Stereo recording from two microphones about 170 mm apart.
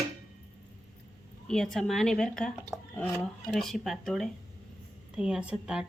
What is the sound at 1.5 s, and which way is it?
A woman's voice, 5° left (ahead or behind).